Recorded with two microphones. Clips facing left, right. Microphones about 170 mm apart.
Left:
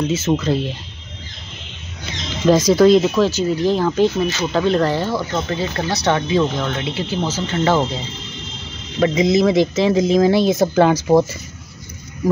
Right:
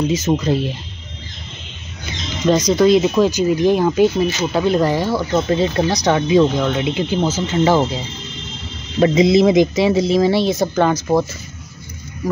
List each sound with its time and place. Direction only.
0.1 s speech: 15° right (ahead or behind)
2.4 s speech: 5° left (ahead or behind)
3.0 s speech: 15° right (ahead or behind)
5.5 s speech: 25° right (ahead or behind)
9.0 s speech: 25° right (ahead or behind); by 11.2 s 10° left (ahead or behind)